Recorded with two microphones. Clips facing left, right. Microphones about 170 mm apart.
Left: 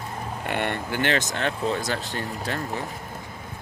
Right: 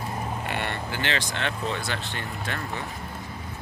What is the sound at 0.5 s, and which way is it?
Speech, 55° left (ahead or behind).